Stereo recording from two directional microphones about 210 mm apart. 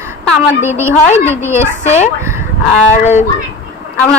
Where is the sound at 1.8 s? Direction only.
30° left (ahead or behind).